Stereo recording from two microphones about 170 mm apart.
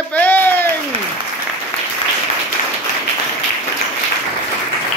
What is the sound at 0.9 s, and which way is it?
Speech, 35° right (ahead or behind).